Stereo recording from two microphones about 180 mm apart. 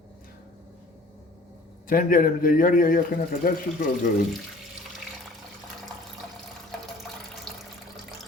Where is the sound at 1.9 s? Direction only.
50° left (ahead or behind).